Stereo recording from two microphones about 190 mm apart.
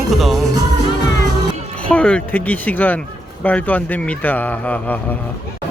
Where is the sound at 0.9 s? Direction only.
20° left (ahead or behind).